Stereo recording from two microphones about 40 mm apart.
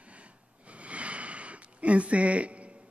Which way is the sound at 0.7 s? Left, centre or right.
Right.